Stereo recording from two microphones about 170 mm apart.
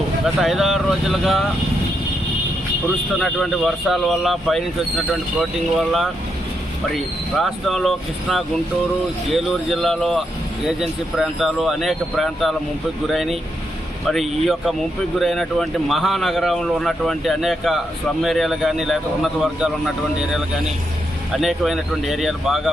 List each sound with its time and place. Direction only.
0.3 s speech: centre (ahead or behind)
3.2 s speech: centre (ahead or behind)
21.3 s speech: centre (ahead or behind)